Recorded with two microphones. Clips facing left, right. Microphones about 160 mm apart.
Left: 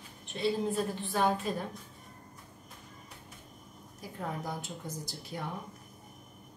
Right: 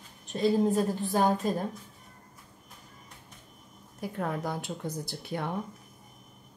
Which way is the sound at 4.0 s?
65° right (ahead or behind).